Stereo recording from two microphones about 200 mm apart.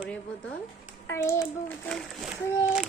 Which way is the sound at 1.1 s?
15° left (ahead or behind).